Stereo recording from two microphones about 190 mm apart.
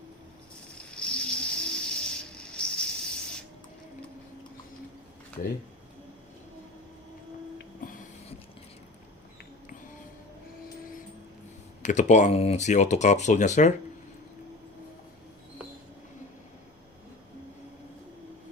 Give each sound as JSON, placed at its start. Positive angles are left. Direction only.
{"t": 0.9, "sound": "ratchet", "side_deg": 5}
{"t": 11.8, "sound": "speech", "side_deg": 40}